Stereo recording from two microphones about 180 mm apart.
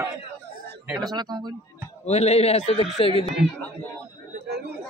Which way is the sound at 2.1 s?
35° left (ahead or behind).